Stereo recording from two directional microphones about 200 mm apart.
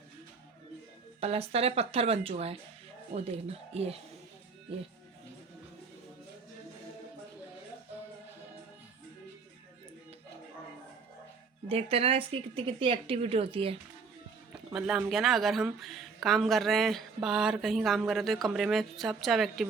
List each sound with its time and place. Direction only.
1.2 s speech: 30° right (ahead or behind)
11.7 s speech: 30° right (ahead or behind)
14.5 s speech: 5° right (ahead or behind)